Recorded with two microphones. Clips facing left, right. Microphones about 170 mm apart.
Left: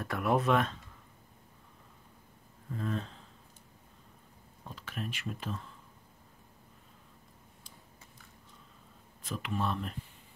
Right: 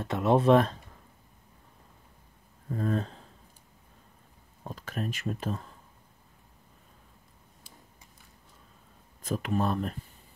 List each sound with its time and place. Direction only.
0.0 s speech: 25° right (ahead or behind)
2.7 s speech: 40° right (ahead or behind)
4.6 s speech: 45° right (ahead or behind)
9.2 s speech: 45° right (ahead or behind)